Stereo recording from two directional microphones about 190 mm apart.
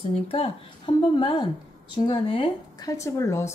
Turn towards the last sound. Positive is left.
turn(degrees=15)  # may be behind; listen again after turning